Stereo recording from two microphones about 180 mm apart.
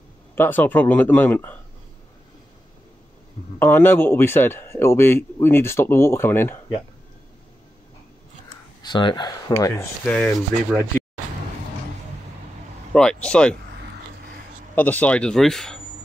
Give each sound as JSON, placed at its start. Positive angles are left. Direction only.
{"t": 0.4, "sound": "a man's voice", "side_deg": 10}
{"t": 3.5, "sound": "a man's voice", "side_deg": 10}
{"t": 8.8, "sound": "speech", "side_deg": 25}
{"t": 9.5, "sound": "a man's voice", "side_deg": 15}
{"t": 12.9, "sound": "speech", "side_deg": 5}
{"t": 14.8, "sound": "speech", "side_deg": 10}